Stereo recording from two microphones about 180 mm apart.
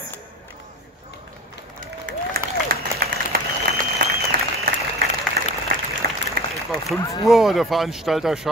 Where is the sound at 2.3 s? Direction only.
60° right (ahead or behind).